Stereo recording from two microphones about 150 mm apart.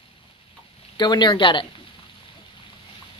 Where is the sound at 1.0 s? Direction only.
30° left (ahead or behind).